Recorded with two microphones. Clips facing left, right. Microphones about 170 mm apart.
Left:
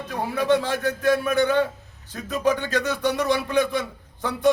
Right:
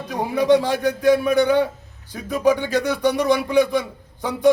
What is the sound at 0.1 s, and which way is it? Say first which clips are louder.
A man's voice: right 5 dB; 15° right (ahead or behind).